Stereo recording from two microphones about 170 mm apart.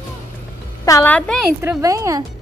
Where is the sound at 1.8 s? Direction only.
20° right (ahead or behind).